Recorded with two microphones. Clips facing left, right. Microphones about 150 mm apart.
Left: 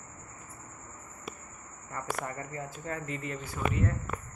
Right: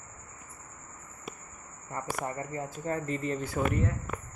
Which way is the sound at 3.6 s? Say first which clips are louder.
Right 3 dB; 60° right (ahead or behind).